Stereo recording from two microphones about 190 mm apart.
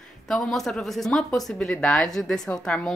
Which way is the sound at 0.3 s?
Centre (ahead or behind).